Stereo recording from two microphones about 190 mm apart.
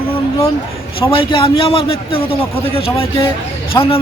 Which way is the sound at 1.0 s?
30° left (ahead or behind).